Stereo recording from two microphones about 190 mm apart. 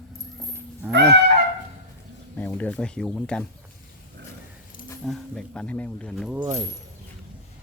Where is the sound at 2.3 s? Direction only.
10° left (ahead or behind).